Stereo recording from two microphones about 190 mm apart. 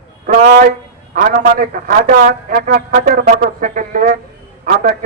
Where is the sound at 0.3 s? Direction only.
50° right (ahead or behind).